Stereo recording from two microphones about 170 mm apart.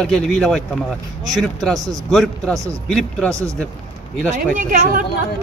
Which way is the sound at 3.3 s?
20° right (ahead or behind).